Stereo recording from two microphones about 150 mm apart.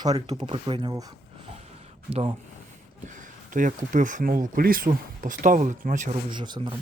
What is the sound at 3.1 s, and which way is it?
Speech, 60° right (ahead or behind).